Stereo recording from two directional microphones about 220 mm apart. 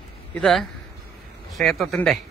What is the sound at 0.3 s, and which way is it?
A man's voice, 5° left (ahead or behind).